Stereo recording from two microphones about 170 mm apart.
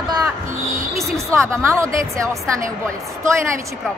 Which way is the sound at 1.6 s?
15° right (ahead or behind).